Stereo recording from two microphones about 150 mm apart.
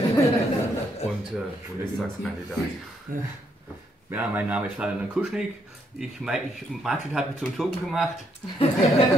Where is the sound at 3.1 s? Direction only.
65° right (ahead or behind).